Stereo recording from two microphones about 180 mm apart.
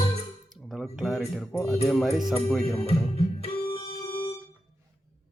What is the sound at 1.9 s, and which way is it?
Speech, centre (ahead or behind).